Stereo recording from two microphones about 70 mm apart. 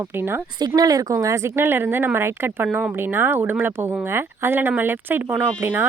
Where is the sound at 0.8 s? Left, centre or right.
Right.